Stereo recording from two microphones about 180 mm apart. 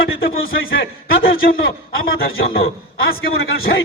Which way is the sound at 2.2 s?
60° left (ahead or behind).